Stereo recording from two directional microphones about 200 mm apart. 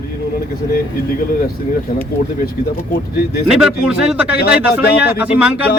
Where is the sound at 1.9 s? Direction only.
45° left (ahead or behind).